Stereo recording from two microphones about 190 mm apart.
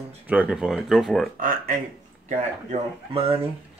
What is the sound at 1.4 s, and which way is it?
Speech, 45° right (ahead or behind).